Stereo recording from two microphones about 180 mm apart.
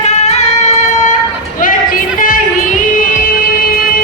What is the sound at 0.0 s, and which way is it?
Music, 40° left (ahead or behind).